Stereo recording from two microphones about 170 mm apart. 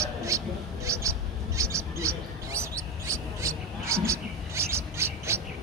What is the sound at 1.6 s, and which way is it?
Mouse, 15° right (ahead or behind).